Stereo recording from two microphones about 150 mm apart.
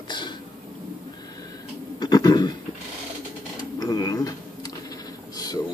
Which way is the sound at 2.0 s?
30° left (ahead or behind).